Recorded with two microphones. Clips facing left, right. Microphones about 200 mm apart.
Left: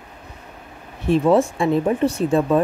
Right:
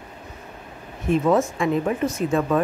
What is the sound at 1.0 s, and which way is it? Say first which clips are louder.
Speech: left 3 dB; 30° left (ahead or behind).